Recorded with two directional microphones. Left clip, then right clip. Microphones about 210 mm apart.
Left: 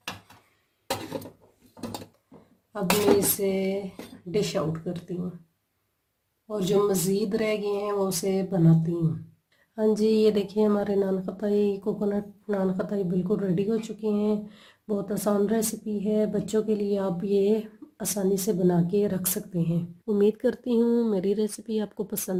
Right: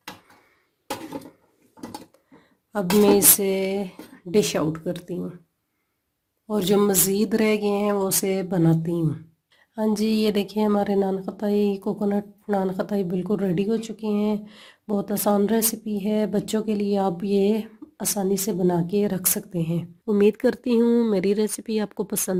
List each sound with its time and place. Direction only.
2.7 s speech: 50° right (ahead or behind)
6.5 s speech: 45° right (ahead or behind)
9.7 s speech: 35° right (ahead or behind)